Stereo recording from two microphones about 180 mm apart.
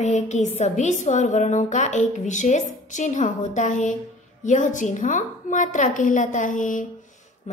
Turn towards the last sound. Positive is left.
turn(degrees=40)  # may be behind; listen again after turning